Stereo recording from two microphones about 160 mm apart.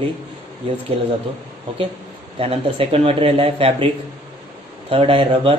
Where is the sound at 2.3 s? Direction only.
35° right (ahead or behind).